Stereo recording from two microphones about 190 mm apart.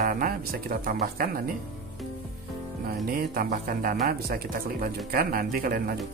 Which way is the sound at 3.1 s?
50° right (ahead or behind).